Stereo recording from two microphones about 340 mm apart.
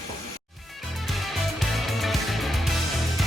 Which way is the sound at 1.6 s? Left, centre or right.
Centre.